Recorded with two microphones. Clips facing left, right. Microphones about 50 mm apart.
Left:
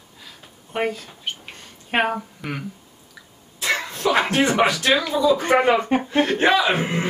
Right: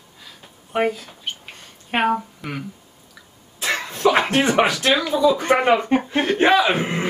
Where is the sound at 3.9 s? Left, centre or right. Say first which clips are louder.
Right 4 dB; right.